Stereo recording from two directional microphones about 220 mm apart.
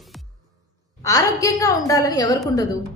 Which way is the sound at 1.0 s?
15° left (ahead or behind).